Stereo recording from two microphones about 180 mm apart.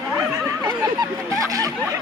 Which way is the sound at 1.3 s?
20° right (ahead or behind).